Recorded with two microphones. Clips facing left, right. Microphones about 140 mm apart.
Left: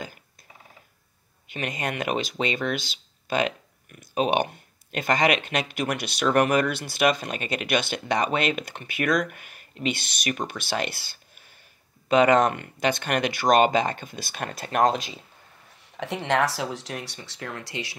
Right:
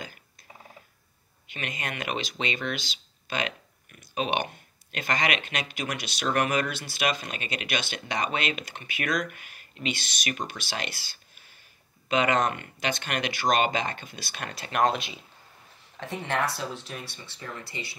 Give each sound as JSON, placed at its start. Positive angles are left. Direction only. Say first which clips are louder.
{"t": 1.5, "sound": "speech", "louder": "left 6 dB", "side_deg": 45}
{"t": 15.8, "sound": "speech", "louder": "left 4 dB", "side_deg": 70}